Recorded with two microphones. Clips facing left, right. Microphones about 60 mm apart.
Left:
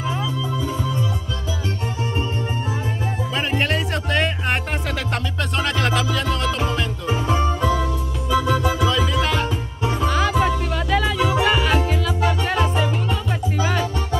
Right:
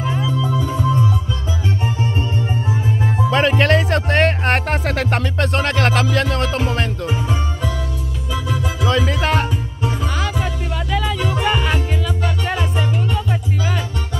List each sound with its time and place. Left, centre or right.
0.0 s music: centre
3.3 s music: right
5.1 s music: right
7.1 s music: centre
8.8 s music: right
9.8 s music: centre